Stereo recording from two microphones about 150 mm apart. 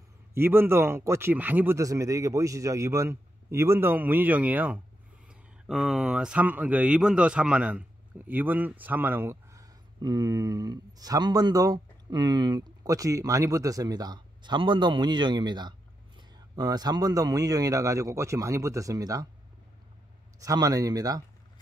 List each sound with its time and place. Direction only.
0.3 s speech: 15° right (ahead or behind)
20.3 s speech: 25° right (ahead or behind)